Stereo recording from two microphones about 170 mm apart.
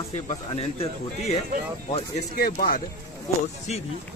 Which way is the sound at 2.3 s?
60° left (ahead or behind).